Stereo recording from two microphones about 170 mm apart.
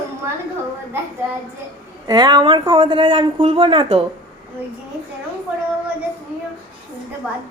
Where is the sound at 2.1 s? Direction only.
25° right (ahead or behind).